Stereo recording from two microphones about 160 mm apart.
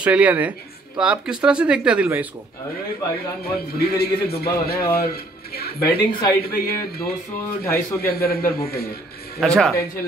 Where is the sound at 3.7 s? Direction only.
80° left.